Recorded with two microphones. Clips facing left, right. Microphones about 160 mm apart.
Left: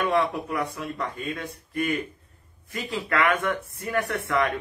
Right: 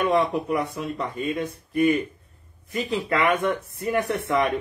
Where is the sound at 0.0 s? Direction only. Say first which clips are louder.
Right 3 dB; 20° right (ahead or behind).